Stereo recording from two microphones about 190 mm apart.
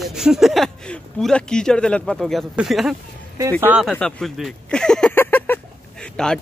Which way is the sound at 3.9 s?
5° left (ahead or behind).